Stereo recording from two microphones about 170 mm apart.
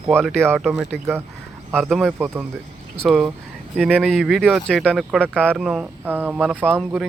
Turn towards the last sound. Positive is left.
turn(degrees=-10)  # may be behind; listen again after turning